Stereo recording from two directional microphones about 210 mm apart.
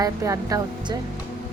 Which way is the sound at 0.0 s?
15° right (ahead or behind).